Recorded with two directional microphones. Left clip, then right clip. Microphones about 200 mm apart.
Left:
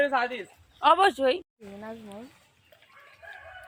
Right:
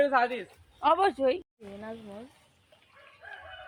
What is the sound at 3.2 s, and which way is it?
Crowing, 20° left (ahead or behind).